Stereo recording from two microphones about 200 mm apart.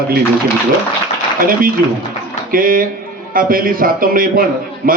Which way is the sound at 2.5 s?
45° right (ahead or behind).